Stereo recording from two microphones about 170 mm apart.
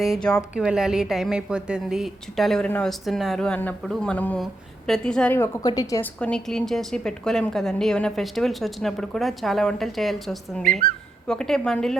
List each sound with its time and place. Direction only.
0.0 s a woman's voice: centre (ahead or behind)
5.6 s a woman's voice: 20° left (ahead or behind)
6.1 s a woman's voice: 5° left (ahead or behind)